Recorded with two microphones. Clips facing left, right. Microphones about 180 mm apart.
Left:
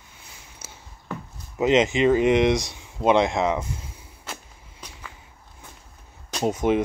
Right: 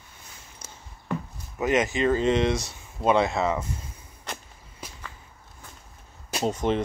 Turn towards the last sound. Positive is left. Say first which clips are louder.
# left 3 dB
turn(degrees=10)  # may be behind; listen again after turning